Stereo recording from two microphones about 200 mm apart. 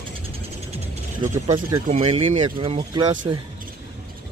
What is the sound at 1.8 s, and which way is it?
Speech, 30° right (ahead or behind).